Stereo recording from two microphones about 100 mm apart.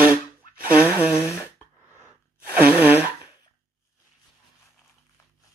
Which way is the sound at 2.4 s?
15° right (ahead or behind).